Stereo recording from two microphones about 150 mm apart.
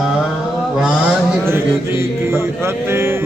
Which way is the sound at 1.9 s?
15° right (ahead or behind).